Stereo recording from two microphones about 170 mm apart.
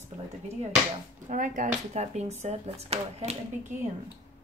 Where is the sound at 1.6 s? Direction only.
40° right (ahead or behind).